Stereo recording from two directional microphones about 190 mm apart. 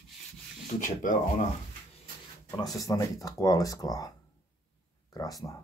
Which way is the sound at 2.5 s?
20° left (ahead or behind).